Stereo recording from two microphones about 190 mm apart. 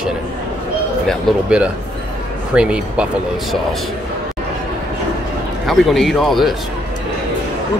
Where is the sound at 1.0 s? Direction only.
5° right (ahead or behind).